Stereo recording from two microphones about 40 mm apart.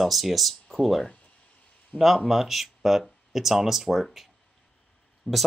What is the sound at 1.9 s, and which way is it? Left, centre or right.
Speech, centre.